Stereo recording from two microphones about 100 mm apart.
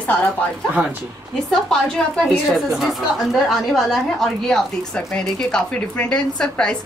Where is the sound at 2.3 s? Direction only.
Centre (ahead or behind).